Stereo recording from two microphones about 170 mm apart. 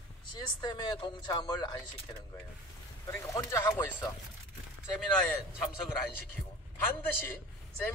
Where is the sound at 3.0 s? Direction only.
15° left (ahead or behind).